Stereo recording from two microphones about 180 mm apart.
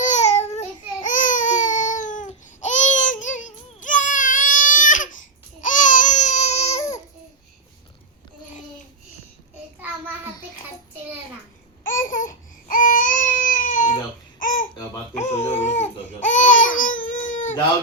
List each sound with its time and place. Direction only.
0.0 s a sound: 40° left (ahead or behind)
1.0 s baby cry: 45° left (ahead or behind)
11.9 s baby cry: 50° left (ahead or behind)
14.3 s babbling: 45° left (ahead or behind)
16.7 s baby cry: 50° left (ahead or behind)